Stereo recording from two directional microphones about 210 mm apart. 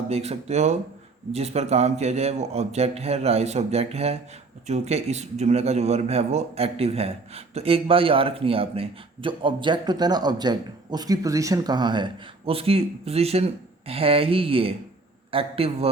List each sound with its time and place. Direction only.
0.1 s a man's voice: 30° right (ahead or behind)